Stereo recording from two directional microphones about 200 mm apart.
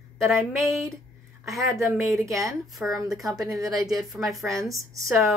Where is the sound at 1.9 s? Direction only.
Centre (ahead or behind).